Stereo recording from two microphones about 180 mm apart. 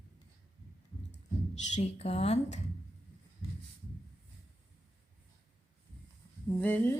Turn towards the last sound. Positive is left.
turn(degrees=10)  # may be behind; listen again after turning